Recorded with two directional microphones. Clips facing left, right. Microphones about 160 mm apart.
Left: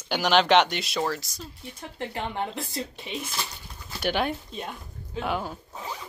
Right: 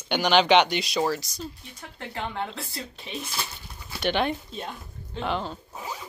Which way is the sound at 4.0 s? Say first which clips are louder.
Right 1 dB; 5° left (ahead or behind).